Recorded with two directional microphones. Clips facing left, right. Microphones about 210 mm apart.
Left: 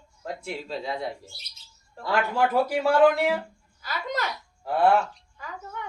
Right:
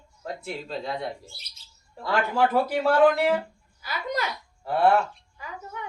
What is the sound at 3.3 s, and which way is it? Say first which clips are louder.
Speech: right 3 dB; 10° right (ahead or behind).